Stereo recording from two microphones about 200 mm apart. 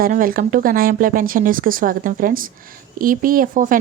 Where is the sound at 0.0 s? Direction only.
45° right (ahead or behind).